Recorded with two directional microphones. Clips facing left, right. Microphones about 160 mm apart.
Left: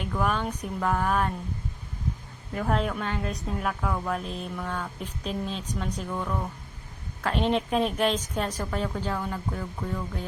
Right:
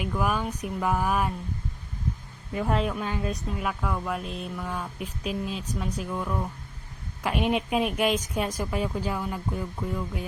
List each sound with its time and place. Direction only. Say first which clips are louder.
0.0 s speech: even; 5° right (ahead or behind)
2.6 s a woman's voice: even; centre (ahead or behind)